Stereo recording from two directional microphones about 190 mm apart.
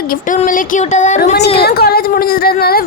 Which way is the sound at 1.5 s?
55° left (ahead or behind).